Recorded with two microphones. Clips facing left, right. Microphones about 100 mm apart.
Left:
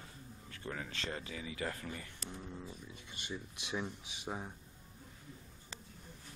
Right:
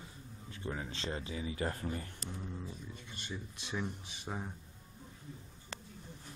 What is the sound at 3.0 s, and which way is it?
Speech, 10° left (ahead or behind).